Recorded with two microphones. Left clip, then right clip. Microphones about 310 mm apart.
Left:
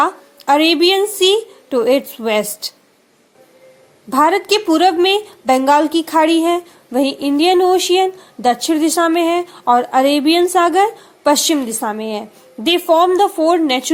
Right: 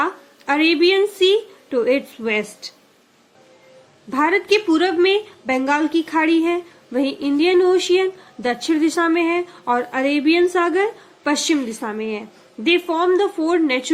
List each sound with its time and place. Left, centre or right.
0.0 s a woman's voice: centre
4.1 s a woman's voice: centre